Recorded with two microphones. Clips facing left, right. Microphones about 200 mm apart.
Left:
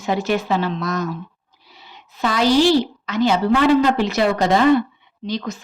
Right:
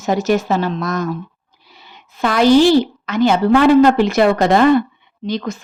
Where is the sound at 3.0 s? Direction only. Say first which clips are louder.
Right 3 dB; 50° right (ahead or behind).